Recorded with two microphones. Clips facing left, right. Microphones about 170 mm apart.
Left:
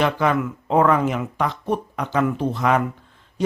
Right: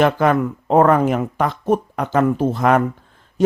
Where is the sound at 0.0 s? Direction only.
45° right (ahead or behind).